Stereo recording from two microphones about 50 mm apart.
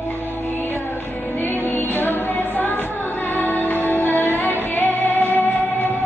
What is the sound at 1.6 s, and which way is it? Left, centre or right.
Music, left.